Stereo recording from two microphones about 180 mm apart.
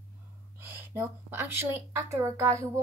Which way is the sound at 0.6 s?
15° right (ahead or behind).